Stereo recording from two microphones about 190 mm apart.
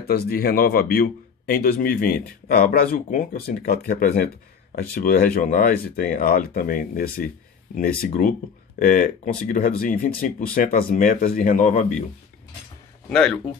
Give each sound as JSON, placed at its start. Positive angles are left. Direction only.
{"t": 0.0, "sound": "speech", "side_deg": 55}
{"t": 13.1, "sound": "speech", "side_deg": 5}